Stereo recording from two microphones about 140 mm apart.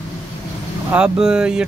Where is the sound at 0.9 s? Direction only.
5° right (ahead or behind).